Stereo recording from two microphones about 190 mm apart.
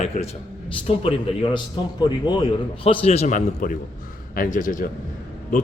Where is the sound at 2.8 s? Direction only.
35° left (ahead or behind).